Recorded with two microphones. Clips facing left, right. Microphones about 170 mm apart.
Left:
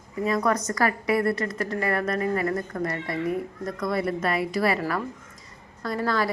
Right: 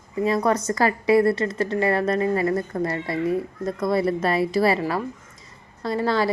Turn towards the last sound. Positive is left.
turn(degrees=-30)  # may be behind; listen again after turning